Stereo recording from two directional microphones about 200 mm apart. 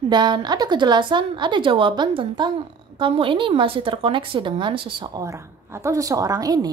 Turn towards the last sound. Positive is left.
turn(degrees=-20)  # may be behind; listen again after turning